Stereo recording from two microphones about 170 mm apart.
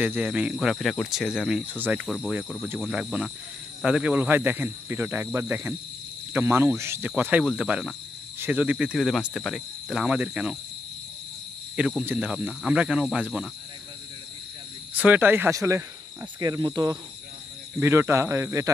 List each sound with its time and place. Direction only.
0.0 s speech: 10° right (ahead or behind)
11.7 s speech: 5° right (ahead or behind)
15.0 s speech: 10° right (ahead or behind)